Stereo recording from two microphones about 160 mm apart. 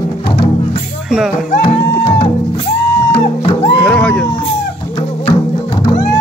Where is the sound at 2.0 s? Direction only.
35° left (ahead or behind).